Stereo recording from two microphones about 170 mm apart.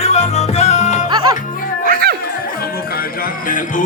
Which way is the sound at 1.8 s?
60° right (ahead or behind).